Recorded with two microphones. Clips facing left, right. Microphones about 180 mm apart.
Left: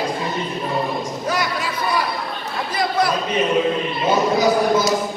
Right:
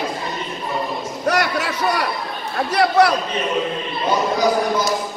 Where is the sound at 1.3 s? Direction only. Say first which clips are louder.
Right 4 dB; 70° right (ahead or behind).